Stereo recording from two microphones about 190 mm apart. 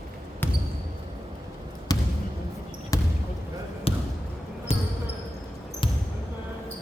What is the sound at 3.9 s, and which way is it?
Basketball bounce, 30° left (ahead or behind).